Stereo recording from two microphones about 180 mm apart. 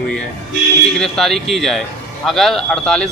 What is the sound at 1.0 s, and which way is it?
Speech, centre (ahead or behind).